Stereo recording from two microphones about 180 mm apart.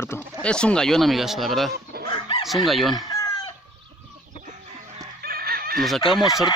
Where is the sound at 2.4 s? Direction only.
Centre (ahead or behind).